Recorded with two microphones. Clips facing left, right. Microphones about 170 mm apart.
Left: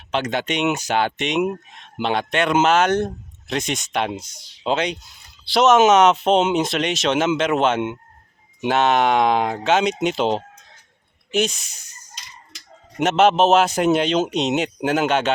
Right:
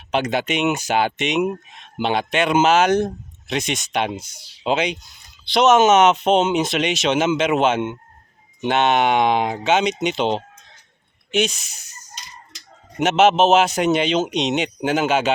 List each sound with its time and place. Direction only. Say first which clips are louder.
0.1 s speech: right 2 dB; 10° right (ahead or behind)
13.0 s speech: right 1 dB; centre (ahead or behind)